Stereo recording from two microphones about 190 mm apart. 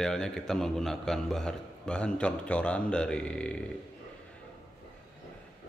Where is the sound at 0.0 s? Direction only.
5° left (ahead or behind).